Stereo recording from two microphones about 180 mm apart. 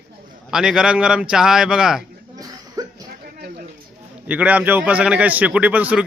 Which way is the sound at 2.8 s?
20° right (ahead or behind).